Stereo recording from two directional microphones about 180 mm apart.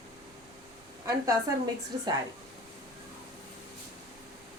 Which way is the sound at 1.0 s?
20° right (ahead or behind).